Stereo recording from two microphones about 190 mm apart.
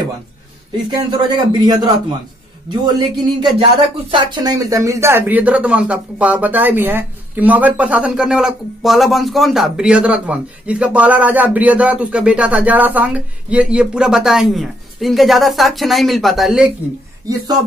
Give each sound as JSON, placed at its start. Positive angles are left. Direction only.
{"t": 0.8, "sound": "speech", "side_deg": -25}